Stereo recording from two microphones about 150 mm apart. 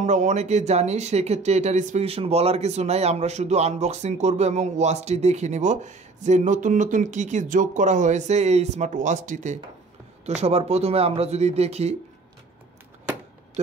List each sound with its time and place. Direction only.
0.0 s speech: 50° right (ahead or behind)
10.2 s speech: 45° right (ahead or behind)